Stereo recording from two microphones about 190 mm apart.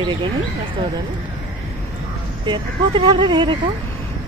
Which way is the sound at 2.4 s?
25° right (ahead or behind).